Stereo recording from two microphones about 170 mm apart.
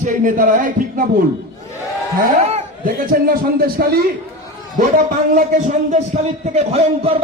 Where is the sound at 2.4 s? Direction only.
40° right (ahead or behind).